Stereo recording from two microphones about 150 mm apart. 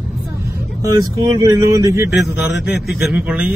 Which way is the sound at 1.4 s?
20° right (ahead or behind).